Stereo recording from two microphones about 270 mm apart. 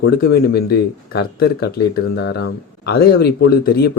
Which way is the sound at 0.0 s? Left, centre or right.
Left.